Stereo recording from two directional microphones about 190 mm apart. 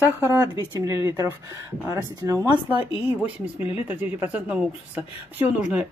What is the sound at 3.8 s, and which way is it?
A woman's voice, 10° right (ahead or behind).